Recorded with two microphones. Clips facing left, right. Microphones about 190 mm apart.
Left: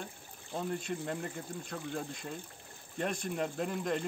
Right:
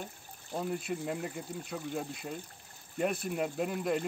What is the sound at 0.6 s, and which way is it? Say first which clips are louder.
Speech: right 1 dB; 5° right (ahead or behind).